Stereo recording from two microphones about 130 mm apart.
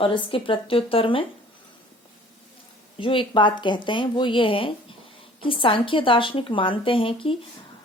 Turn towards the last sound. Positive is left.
turn(degrees=45)  # may be behind; listen again after turning